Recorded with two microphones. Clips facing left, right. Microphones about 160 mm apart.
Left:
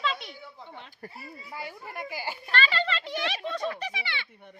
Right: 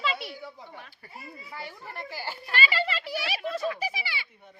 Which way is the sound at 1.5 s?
15° left (ahead or behind).